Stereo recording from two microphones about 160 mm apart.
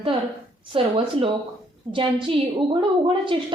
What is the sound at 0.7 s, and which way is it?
A woman's voice, 35° right (ahead or behind).